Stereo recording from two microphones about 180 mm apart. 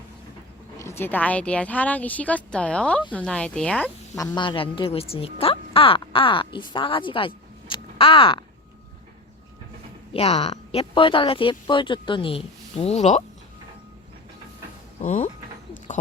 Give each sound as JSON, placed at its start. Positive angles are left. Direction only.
{"t": 0.8, "sound": "speech", "side_deg": 15}
{"t": 4.2, "sound": "a woman's voice", "side_deg": 25}
{"t": 10.1, "sound": "speech", "side_deg": 35}
{"t": 15.0, "sound": "speech", "side_deg": 40}